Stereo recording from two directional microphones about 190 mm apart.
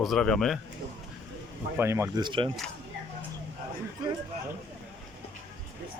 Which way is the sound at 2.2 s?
25° right (ahead or behind).